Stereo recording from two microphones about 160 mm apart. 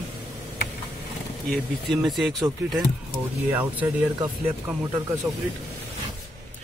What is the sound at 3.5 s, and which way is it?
Speech, 10° right (ahead or behind).